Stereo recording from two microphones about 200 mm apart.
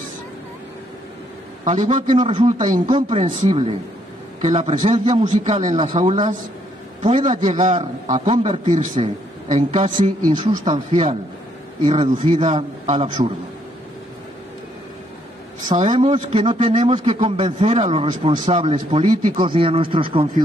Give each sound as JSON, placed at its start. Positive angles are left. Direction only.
{"t": 1.6, "sound": "a man's voice", "side_deg": -35}
{"t": 10.2, "sound": "a man's voice", "side_deg": -20}
{"t": 15.7, "sound": "a man's voice", "side_deg": -30}